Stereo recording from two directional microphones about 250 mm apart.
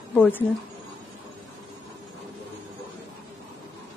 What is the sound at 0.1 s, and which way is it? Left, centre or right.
Speech, centre.